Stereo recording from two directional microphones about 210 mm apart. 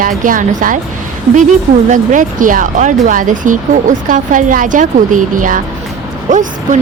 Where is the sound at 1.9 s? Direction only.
40° right (ahead or behind).